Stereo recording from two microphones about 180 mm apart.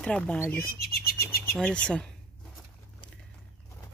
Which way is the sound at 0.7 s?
60° left (ahead or behind).